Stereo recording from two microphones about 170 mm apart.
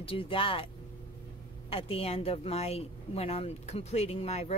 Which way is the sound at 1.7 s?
35° left (ahead or behind).